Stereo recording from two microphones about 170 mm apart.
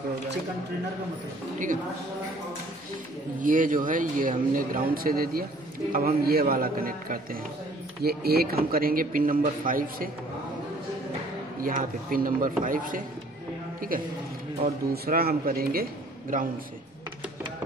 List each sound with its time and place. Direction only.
3.4 s speech: 50° right (ahead or behind)
11.6 s a man's voice: 55° right (ahead or behind)